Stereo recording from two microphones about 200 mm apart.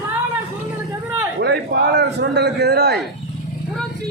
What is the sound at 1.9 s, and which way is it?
Speech, 55° right (ahead or behind).